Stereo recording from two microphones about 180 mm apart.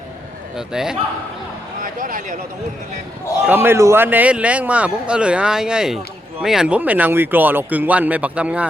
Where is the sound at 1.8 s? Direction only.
45° right (ahead or behind).